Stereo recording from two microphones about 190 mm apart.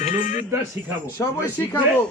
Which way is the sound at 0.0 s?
40° left (ahead or behind).